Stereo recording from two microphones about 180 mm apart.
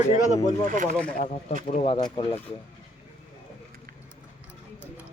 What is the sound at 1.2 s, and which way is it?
Speech, 35° left (ahead or behind).